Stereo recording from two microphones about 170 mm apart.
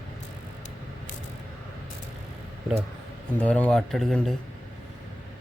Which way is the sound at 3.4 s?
10° left (ahead or behind).